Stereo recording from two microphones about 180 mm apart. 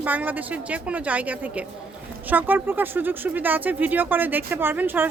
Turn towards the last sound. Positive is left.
turn(degrees=-10)  # may be behind; listen again after turning